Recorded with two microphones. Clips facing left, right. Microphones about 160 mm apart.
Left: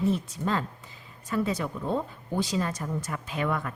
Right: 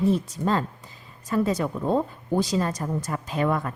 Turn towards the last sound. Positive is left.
turn(degrees=-35)  # may be behind; listen again after turning